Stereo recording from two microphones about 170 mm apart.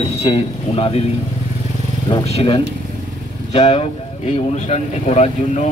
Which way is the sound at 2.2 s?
35° left (ahead or behind).